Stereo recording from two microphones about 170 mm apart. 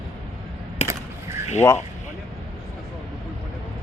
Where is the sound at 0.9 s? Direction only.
15° right (ahead or behind).